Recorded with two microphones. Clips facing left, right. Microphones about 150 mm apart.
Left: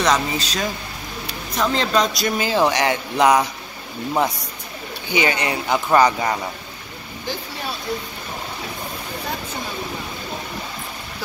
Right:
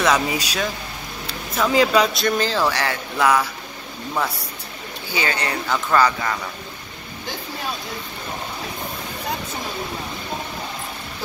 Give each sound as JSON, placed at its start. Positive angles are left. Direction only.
{"t": 0.0, "sound": "speech", "side_deg": -10}
{"t": 2.2, "sound": "speech", "side_deg": 10}
{"t": 5.1, "sound": "speech", "side_deg": 15}